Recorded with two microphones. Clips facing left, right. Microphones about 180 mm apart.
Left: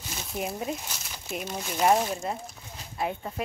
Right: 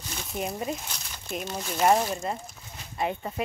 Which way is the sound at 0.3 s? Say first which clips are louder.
Right 1 dB; centre (ahead or behind).